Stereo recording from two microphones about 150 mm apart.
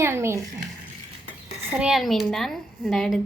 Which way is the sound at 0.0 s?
15° right (ahead or behind).